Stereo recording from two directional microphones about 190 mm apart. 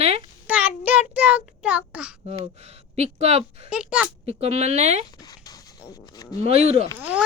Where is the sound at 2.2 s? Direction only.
35° right (ahead or behind).